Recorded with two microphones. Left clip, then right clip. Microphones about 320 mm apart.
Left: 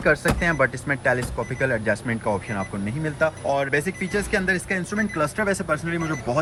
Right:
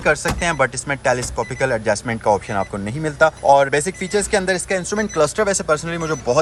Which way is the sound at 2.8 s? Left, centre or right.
Right.